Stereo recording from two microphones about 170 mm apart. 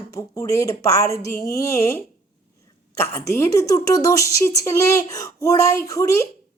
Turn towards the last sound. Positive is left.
turn(degrees=20)  # may be behind; listen again after turning